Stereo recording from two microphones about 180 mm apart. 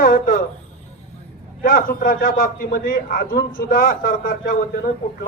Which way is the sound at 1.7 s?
50° left (ahead or behind).